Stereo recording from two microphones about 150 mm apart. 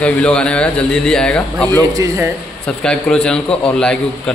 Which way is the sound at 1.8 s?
20° right (ahead or behind).